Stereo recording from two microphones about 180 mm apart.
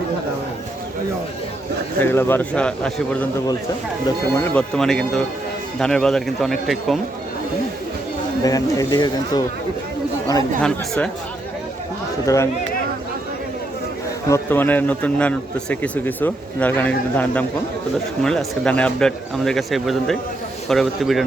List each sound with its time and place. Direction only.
2.0 s speech: 10° left (ahead or behind)
4.5 s speech: 5° left (ahead or behind)
8.4 s speech: 20° left (ahead or behind)
10.6 s speech: 5° left (ahead or behind)
12.2 s speech: 15° left (ahead or behind)
14.3 s speech: 15° left (ahead or behind)